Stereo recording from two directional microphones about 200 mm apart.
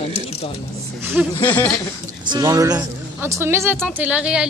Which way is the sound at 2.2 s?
20° right (ahead or behind).